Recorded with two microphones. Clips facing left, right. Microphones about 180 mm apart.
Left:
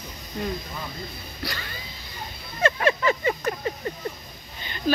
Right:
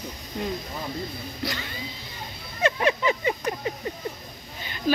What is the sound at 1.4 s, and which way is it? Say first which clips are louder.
Speech: right 2 dB; 20° right (ahead or behind).